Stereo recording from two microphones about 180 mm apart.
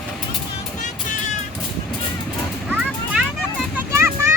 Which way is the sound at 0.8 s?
45° left (ahead or behind).